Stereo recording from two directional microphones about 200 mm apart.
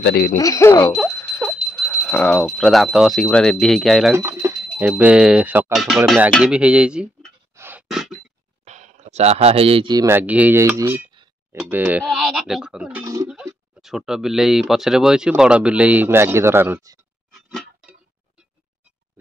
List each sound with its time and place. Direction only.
0.0 s speech: 50° left (ahead or behind)
0.4 s speech: 15° left (ahead or behind); by 4.1 s centre (ahead or behind)
4.1 s speech: 15° right (ahead or behind)
7.5 s a sound: 10° right (ahead or behind)
8.6 s speech: 35° right (ahead or behind); by 11.0 s 15° right (ahead or behind)
11.2 s a sound: 25° right (ahead or behind)
11.5 s speech: 10° right (ahead or behind)
13.0 s speech: 15° right (ahead or behind)
13.7 s speech: centre (ahead or behind)
17.3 s music: centre (ahead or behind)